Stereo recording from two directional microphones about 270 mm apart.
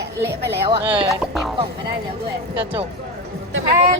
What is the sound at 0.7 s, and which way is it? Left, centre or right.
Speech, centre.